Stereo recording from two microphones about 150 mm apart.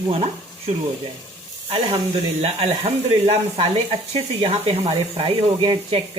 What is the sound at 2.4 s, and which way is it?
Speech, 40° right (ahead or behind).